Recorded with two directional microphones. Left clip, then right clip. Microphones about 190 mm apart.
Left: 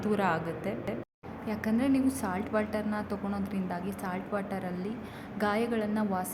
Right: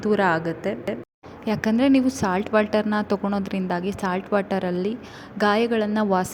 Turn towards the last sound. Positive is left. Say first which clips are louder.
# right 10 dB
turn(degrees=-35)  # may be behind; listen again after turning